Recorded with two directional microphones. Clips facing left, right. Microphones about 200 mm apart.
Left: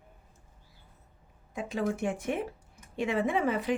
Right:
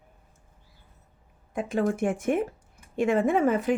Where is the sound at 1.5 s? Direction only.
50° right (ahead or behind).